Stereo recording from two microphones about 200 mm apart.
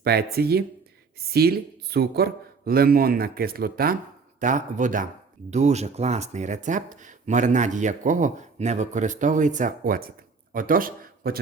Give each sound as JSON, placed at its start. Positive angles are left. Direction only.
{"t": 0.0, "sound": "a man's voice", "side_deg": -50}